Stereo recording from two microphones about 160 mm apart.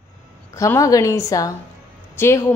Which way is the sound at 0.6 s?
20° left (ahead or behind).